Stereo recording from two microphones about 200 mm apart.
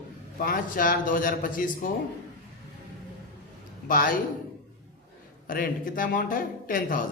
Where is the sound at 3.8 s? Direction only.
45° left (ahead or behind).